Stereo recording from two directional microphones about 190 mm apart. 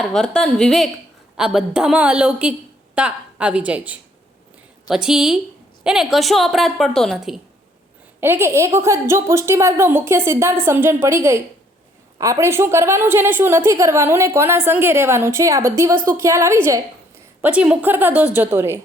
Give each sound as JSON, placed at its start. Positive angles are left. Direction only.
{"t": 0.0, "sound": "a woman's voice", "side_deg": 0}
{"t": 8.2, "sound": "a woman's voice", "side_deg": -10}